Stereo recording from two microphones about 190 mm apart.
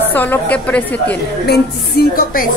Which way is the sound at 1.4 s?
55° left (ahead or behind).